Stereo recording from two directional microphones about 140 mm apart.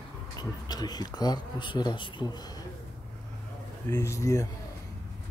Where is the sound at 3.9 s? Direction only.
20° left (ahead or behind).